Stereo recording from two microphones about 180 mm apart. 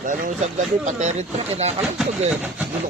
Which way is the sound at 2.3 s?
10° right (ahead or behind).